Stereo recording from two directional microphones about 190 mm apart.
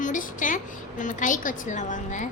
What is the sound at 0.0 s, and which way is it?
A woman's voice, 45° left (ahead or behind).